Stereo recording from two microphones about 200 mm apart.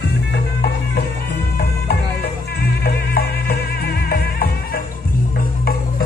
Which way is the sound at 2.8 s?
50° left (ahead or behind).